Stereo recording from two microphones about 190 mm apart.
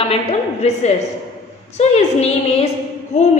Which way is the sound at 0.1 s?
35° left (ahead or behind).